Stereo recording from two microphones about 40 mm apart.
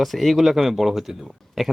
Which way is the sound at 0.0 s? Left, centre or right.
Centre.